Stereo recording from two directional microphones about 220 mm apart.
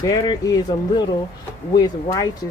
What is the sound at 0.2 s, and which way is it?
Speech, 20° left (ahead or behind).